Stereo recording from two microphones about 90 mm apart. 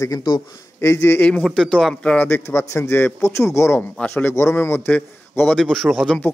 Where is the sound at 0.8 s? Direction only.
30° left (ahead or behind).